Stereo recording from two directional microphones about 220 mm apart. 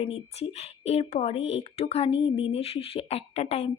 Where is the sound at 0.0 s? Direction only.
30° left (ahead or behind).